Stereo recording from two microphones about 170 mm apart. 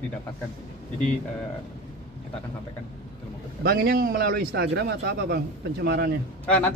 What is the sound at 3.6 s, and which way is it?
A man's voice, 65° right (ahead or behind).